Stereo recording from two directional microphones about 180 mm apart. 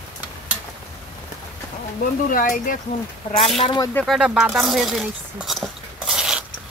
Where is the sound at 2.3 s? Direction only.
50° left (ahead or behind).